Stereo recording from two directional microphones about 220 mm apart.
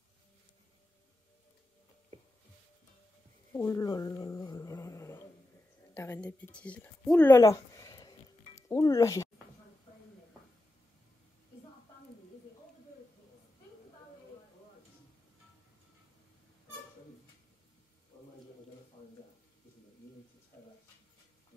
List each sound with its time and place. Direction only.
3.5 s dog: 15° left (ahead or behind)
5.9 s a woman's voice: 10° left (ahead or behind)